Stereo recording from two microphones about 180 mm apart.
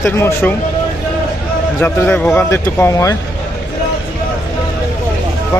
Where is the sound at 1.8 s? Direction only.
10° left (ahead or behind).